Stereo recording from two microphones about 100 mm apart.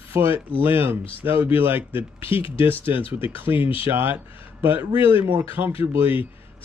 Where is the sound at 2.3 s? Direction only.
65° left (ahead or behind).